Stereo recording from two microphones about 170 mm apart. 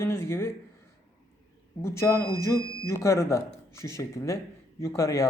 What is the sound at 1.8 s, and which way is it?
Speech, 15° left (ahead or behind).